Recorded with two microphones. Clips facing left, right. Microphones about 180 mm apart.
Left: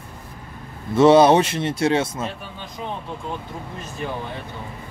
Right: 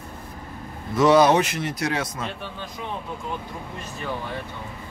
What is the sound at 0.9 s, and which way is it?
Speech, 30° left (ahead or behind).